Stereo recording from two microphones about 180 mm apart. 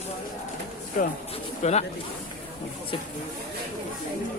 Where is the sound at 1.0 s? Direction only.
50° left (ahead or behind).